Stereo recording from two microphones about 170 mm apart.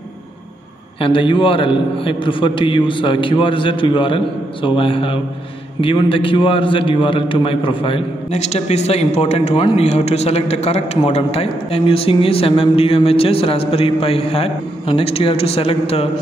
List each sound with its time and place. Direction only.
0.9 s a man's voice: 30° left (ahead or behind)